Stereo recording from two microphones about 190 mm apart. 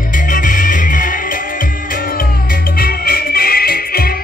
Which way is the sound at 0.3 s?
45° left (ahead or behind).